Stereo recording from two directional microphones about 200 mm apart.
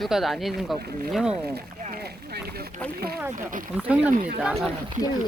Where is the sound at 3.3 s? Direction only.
40° right (ahead or behind).